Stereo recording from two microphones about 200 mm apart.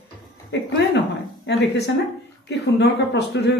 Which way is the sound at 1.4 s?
55° left (ahead or behind).